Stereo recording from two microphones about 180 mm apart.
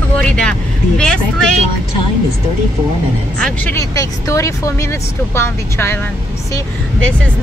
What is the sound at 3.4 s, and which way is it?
Speech, 10° left (ahead or behind).